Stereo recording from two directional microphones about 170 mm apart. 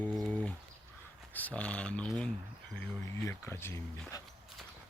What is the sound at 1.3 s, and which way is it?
Speech, 10° left (ahead or behind).